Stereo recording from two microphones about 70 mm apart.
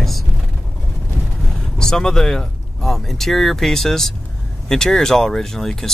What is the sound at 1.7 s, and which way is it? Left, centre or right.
Speech, centre.